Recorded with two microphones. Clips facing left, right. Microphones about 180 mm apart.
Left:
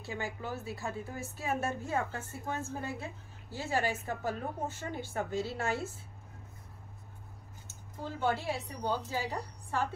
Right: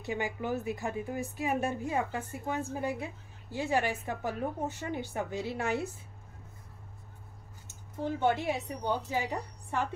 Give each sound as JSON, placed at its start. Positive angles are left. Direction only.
{"t": 0.0, "sound": "a woman's voice", "side_deg": -20}
{"t": 7.6, "sound": "a woman's voice", "side_deg": -20}